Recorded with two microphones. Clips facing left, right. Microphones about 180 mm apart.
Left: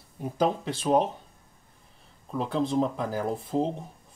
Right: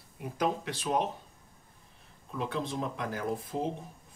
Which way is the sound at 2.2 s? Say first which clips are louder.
Left 6 dB; 35° left (ahead or behind).